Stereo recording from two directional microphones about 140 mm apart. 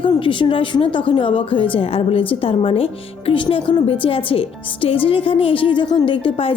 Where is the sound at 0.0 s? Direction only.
35° left (ahead or behind).